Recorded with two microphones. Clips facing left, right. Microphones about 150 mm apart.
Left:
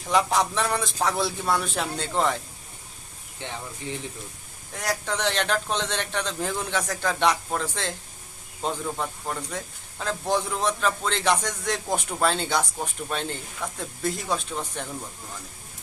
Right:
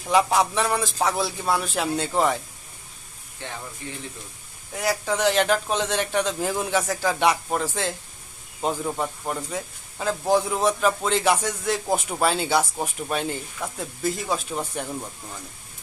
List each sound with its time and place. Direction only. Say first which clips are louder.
0.1 s a man's voice: right 3 dB; 5° right (ahead or behind)
3.4 s speech: left 1 dB; 20° left (ahead or behind)
4.7 s speech: right 4 dB; 5° right (ahead or behind)